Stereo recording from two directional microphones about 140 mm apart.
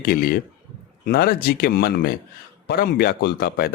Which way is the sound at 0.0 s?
90° left.